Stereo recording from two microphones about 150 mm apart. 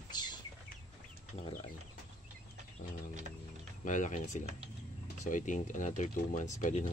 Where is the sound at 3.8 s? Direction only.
55° left (ahead or behind).